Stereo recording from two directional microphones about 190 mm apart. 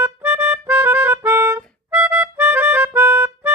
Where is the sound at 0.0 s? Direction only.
10° right (ahead or behind).